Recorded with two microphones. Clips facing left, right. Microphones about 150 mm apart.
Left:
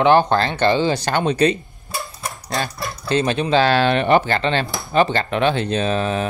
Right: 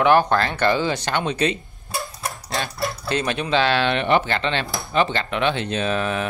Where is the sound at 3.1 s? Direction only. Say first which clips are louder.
Left 5 dB; 30° left (ahead or behind).